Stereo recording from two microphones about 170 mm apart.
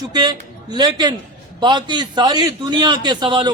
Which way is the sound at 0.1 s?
25° right (ahead or behind).